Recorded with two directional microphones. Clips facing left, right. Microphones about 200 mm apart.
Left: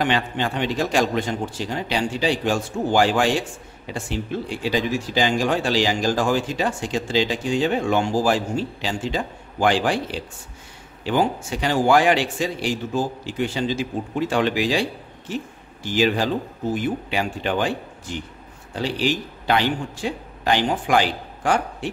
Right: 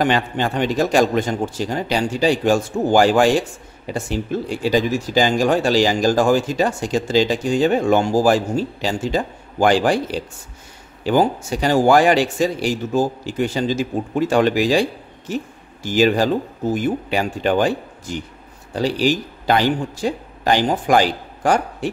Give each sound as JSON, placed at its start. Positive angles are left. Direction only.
{"t": 0.0, "sound": "a man's voice", "side_deg": -45}